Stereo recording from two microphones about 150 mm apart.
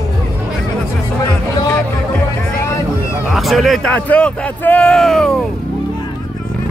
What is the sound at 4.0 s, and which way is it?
Speech, 10° left (ahead or behind).